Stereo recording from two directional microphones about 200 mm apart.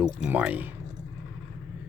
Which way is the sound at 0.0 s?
5° right (ahead or behind).